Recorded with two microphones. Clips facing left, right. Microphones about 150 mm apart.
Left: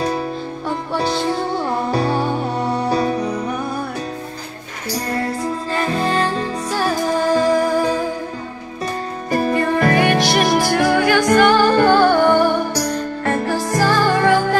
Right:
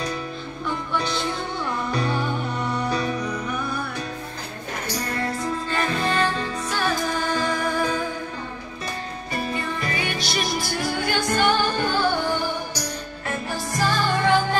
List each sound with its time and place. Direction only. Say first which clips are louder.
0.7 s music: left 5 dB; 35° left (ahead or behind)
4.9 s music: left 6 dB; 35° left (ahead or behind)
9.3 s music: left 11 dB; 50° left (ahead or behind)